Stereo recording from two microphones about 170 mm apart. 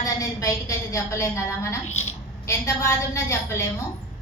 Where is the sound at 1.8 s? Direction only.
40° left (ahead or behind).